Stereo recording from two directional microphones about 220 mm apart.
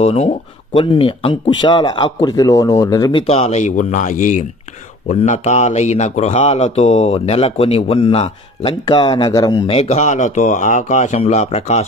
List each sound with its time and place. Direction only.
0.0 s speech: 30° left (ahead or behind)